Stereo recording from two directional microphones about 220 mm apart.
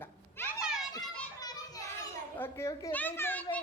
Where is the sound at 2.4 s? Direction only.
15° left (ahead or behind).